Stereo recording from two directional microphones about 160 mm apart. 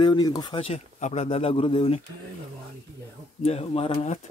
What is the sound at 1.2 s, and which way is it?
Speech, 35° left (ahead or behind).